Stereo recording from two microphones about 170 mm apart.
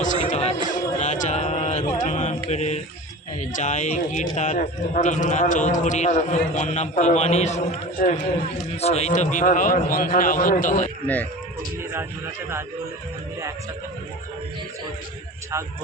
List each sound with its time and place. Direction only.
0.3 s a sound: 40° left (ahead or behind)
2.0 s mantra: 45° left (ahead or behind)
2.5 s a man's voice: 40° left (ahead or behind)
11.0 s speech: 10° left (ahead or behind)
11.8 s a man's voice: 15° right (ahead or behind)